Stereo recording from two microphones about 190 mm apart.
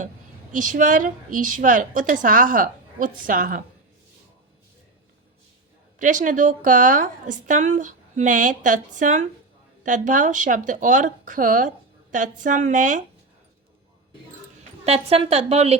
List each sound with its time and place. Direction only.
0.5 s a woman's voice: 40° right (ahead or behind)
6.0 s a woman's voice: 40° right (ahead or behind)
14.8 s a woman's voice: 30° right (ahead or behind)